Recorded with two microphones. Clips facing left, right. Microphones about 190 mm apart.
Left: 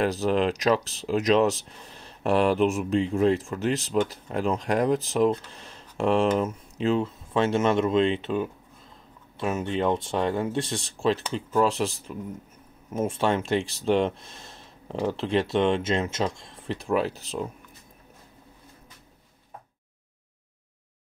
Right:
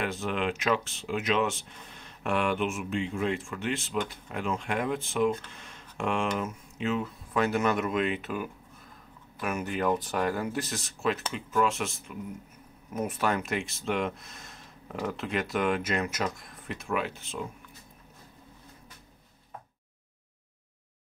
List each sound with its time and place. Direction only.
0.0 s speech: 35° left (ahead or behind)